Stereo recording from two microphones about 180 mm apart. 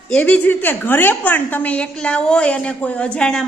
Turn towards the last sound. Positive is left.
turn(degrees=5)  # may be behind; listen again after turning